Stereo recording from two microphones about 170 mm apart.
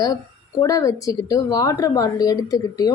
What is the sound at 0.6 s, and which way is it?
A woman's voice, 20° left (ahead or behind).